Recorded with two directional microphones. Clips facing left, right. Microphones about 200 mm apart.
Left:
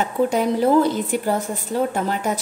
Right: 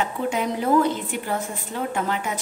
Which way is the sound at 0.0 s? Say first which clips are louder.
Left 5 dB; 40° left (ahead or behind).